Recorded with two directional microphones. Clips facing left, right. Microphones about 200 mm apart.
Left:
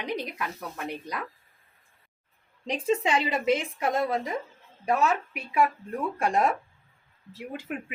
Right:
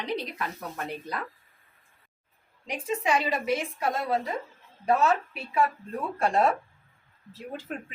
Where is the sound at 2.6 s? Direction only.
25° left (ahead or behind).